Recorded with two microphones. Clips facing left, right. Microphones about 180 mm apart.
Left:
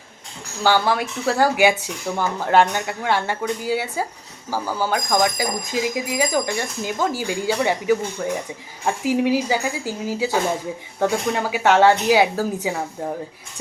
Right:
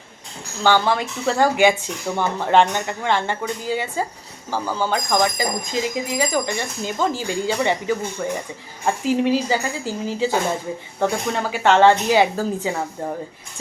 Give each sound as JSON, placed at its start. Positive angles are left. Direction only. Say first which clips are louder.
{"t": 0.6, "sound": "speech", "louder": "right 1 dB", "side_deg": 10}
{"t": 8.8, "sound": "speech", "louder": "even", "side_deg": 10}